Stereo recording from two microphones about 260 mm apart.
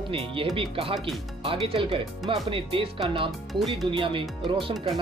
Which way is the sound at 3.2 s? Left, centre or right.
Centre.